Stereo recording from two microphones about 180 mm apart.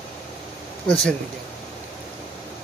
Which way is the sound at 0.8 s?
5° left (ahead or behind).